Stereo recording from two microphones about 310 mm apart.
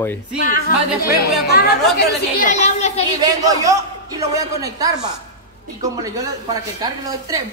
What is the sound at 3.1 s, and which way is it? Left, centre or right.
A man's voice, centre.